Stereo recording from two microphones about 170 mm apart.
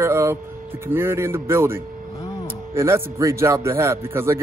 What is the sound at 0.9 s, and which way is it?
A man's voice, 15° right (ahead or behind).